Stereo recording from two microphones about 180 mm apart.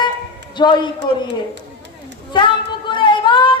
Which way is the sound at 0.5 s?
25° left (ahead or behind).